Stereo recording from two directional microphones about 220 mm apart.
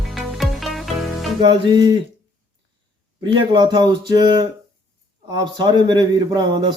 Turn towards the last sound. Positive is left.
turn(degrees=-20)  # may be behind; listen again after turning